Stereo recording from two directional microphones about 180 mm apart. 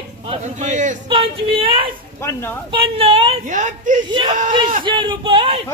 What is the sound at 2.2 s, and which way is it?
Speech, 15° left (ahead or behind).